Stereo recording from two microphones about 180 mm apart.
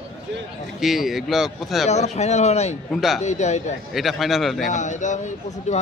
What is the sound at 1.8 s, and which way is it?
Speech, 40° left (ahead or behind).